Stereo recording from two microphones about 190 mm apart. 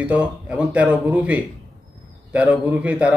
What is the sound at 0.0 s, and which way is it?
Speech, 5° right (ahead or behind).